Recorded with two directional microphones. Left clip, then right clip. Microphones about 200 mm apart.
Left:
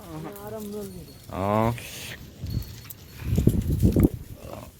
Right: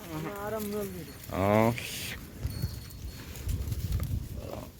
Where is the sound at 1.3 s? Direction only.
5° left (ahead or behind).